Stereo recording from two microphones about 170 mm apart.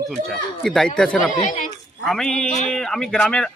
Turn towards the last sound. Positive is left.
turn(degrees=5)  # may be behind; listen again after turning